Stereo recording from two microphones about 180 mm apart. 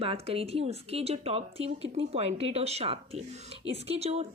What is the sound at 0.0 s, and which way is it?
A woman's voice, 30° right (ahead or behind).